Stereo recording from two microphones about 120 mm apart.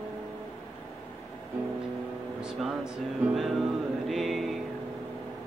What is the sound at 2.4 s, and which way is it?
Speech, 5° right (ahead or behind).